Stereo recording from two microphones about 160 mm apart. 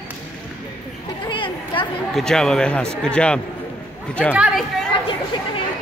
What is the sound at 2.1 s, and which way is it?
Speech, 5° left (ahead or behind).